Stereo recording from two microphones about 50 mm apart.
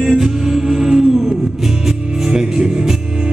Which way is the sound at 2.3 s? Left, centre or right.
Centre.